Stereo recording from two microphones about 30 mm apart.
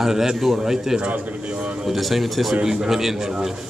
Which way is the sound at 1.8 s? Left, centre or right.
Centre.